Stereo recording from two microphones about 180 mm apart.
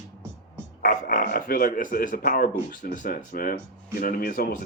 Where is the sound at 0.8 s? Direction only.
50° left (ahead or behind).